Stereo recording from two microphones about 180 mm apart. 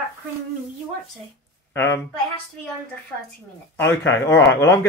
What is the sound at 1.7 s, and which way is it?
Speech, 15° left (ahead or behind).